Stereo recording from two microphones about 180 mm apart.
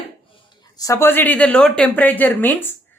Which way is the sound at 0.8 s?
15° left (ahead or behind).